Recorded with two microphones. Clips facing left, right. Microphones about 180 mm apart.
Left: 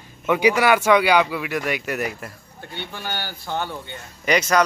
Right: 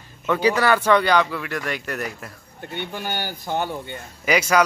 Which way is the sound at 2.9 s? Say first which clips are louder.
Right 1 dB; 15° right (ahead or behind).